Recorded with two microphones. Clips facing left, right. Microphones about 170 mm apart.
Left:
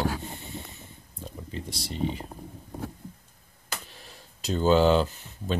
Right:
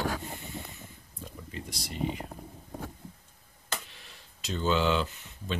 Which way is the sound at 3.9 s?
40° left (ahead or behind).